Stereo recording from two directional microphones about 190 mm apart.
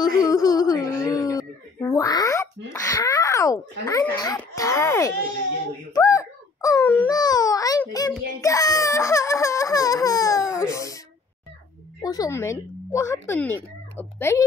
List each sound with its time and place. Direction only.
0.0 s whimper: 20° left (ahead or behind)
5.9 s a sound: 15° left (ahead or behind)
8.4 s baby cry: 15° left (ahead or behind)
10.7 s a sound: 15° left (ahead or behind)
12.0 s a woman's voice: 20° left (ahead or behind)
13.9 s cat: 10° left (ahead or behind)